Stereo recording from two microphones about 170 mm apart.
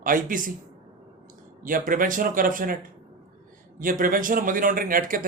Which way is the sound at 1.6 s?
55° right (ahead or behind).